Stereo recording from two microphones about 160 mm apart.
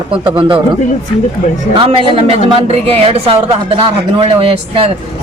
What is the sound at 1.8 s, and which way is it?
A woman's voice, 35° right (ahead or behind).